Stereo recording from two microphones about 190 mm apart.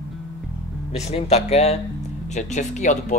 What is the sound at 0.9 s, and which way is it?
A man's voice, 35° left (ahead or behind).